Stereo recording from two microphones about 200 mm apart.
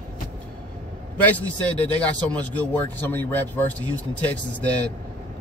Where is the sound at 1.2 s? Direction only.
5° left (ahead or behind).